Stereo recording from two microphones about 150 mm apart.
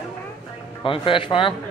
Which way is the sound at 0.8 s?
35° left (ahead or behind).